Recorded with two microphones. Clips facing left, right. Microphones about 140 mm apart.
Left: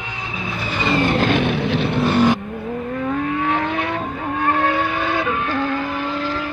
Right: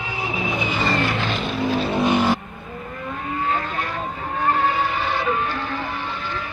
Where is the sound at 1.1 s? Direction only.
60° left (ahead or behind).